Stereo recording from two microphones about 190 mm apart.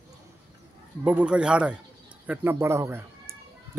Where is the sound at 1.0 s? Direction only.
5° right (ahead or behind).